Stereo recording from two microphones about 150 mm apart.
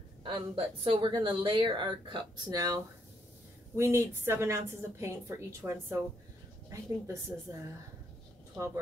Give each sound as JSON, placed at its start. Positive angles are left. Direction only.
{"t": 0.2, "sound": "a woman's voice", "side_deg": -35}